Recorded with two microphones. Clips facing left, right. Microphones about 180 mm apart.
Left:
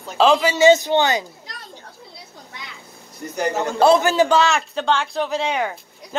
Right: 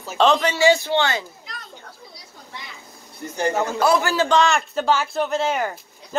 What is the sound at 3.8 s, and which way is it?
Speech, 25° left (ahead or behind).